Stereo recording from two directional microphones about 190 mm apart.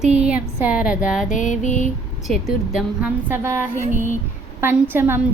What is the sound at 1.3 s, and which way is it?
Music, 40° left (ahead or behind).